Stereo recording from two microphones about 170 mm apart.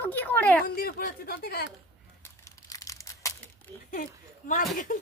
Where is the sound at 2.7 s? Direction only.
20° left (ahead or behind).